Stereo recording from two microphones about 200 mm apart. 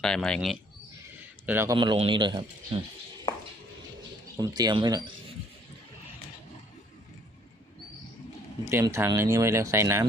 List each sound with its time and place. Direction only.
0.0 s speech: 5° left (ahead or behind)
1.5 s speech: 15° right (ahead or behind)
4.4 s speech: 20° right (ahead or behind)
8.7 s speech: 15° right (ahead or behind)